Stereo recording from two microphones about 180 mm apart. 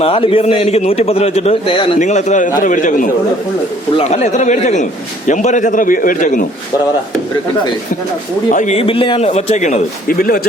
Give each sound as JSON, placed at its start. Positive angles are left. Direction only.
{"t": 0.0, "sound": "a man's voice", "side_deg": 30}
{"t": 2.0, "sound": "a man's voice", "side_deg": 40}
{"t": 8.4, "sound": "a man's voice", "side_deg": 40}